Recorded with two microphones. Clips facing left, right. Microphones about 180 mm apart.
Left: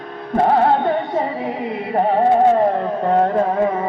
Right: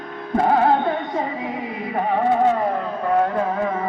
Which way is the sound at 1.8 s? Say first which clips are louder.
Left 5 dB; 35° left (ahead or behind).